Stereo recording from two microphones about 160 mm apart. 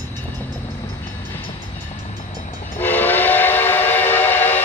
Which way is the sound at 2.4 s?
70° left (ahead or behind).